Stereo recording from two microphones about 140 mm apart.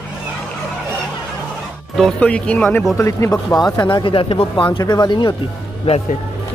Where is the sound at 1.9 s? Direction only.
5° left (ahead or behind).